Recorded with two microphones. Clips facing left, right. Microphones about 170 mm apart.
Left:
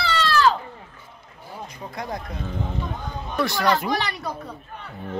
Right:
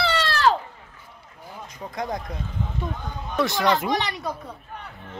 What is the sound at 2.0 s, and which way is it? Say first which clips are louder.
Speech: right 2 dB; 20° right (ahead or behind).